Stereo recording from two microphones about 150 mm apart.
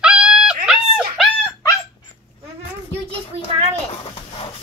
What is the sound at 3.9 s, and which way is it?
Dog, 35° left (ahead or behind).